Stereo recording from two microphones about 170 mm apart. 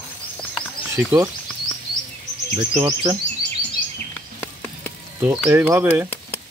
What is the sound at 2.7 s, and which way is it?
Speech, 20° right (ahead or behind).